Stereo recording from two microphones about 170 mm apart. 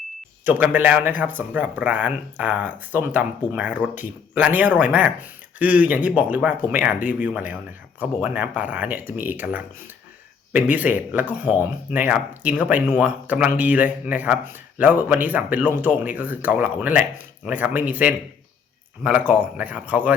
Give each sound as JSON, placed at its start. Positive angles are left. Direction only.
{"t": 0.4, "sound": "speech", "side_deg": -10}